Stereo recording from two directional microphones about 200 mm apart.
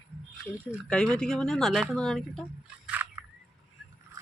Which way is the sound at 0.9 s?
5° left (ahead or behind).